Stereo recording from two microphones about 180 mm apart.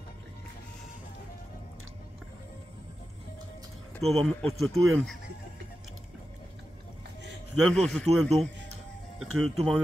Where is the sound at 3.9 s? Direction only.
Centre (ahead or behind).